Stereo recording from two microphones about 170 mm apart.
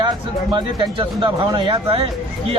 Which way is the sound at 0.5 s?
30° right (ahead or behind).